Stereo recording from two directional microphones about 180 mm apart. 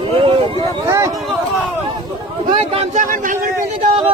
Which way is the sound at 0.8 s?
15° right (ahead or behind).